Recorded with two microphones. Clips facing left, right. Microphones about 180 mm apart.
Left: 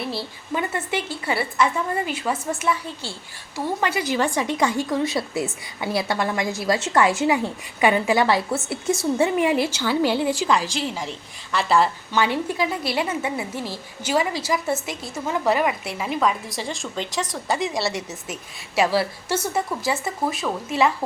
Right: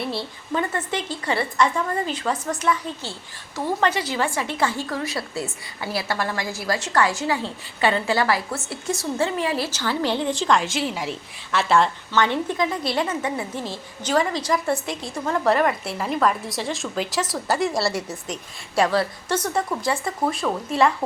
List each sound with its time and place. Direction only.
0.0 s a woman's voice: centre (ahead or behind)
3.8 s a woman's voice: 10° left (ahead or behind)